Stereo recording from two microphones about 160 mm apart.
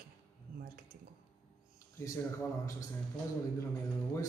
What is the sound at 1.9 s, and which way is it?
Speech, 20° left (ahead or behind).